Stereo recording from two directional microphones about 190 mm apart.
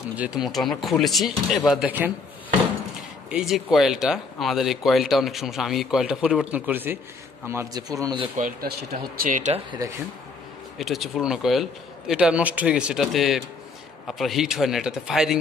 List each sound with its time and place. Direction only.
0.1 s speech: 5° right (ahead or behind)
3.3 s a man's voice: 5° right (ahead or behind); by 8.3 s 20° right (ahead or behind)
8.4 s speech: 45° right (ahead or behind)
10.8 s speech: centre (ahead or behind)